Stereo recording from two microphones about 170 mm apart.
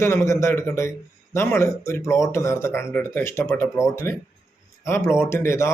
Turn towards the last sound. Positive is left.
turn(degrees=15)  # may be behind; listen again after turning